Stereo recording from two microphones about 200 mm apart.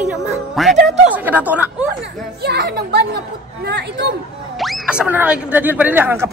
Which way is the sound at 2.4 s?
55° right (ahead or behind).